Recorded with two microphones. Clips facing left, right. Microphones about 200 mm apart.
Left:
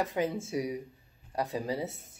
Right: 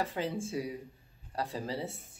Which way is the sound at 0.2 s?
20° left (ahead or behind).